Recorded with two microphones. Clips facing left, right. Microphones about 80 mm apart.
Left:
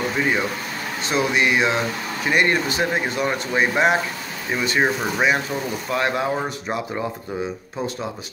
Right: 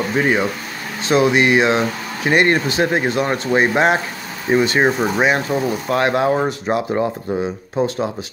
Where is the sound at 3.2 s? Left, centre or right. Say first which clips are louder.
Right 2 dB; right.